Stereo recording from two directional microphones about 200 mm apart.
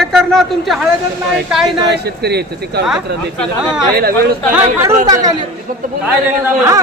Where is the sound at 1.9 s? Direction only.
55° right (ahead or behind).